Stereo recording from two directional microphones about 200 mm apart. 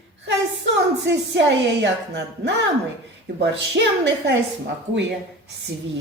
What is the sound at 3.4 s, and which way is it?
Speech, 60° right (ahead or behind).